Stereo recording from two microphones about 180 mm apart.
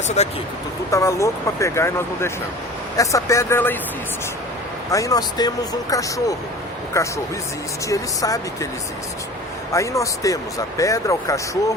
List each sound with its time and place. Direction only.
0.2 s speech: 40° left (ahead or behind)
0.9 s speech: 15° left (ahead or behind)
4.9 s speech: 20° left (ahead or behind)
9.7 s speech: 15° left (ahead or behind)